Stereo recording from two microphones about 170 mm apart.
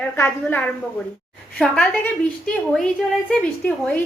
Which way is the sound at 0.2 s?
10° left (ahead or behind).